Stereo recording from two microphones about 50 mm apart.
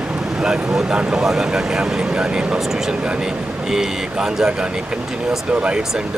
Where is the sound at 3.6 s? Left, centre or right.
Centre.